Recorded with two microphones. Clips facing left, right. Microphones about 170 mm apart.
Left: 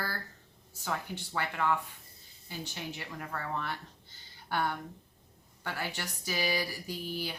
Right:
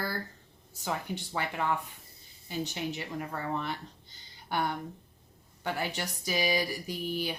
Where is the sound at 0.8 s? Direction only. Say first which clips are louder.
Right 2 dB; 15° right (ahead or behind).